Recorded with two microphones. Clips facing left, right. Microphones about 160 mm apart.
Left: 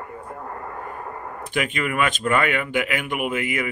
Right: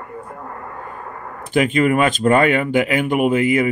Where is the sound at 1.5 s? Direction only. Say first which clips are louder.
Right 10 dB; 35° right (ahead or behind).